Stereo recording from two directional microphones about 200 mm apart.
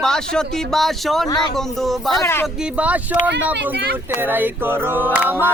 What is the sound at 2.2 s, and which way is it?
Speech, 10° left (ahead or behind).